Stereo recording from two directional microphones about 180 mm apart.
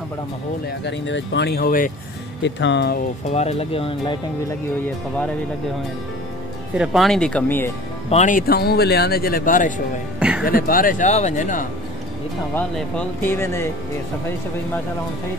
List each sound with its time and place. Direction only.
0.8 s speech: 85° left; by 1.9 s 50° left (ahead or behind)
2.4 s speech: 85° left
3.3 s speech: 35° left (ahead or behind)
6.8 s speech: centre (ahead or behind)
8.1 s speech: 40° left (ahead or behind)
10.1 s music: 5° right (ahead or behind)
10.4 s speech: 50° left (ahead or behind)
12.5 s speech: 10° left (ahead or behind)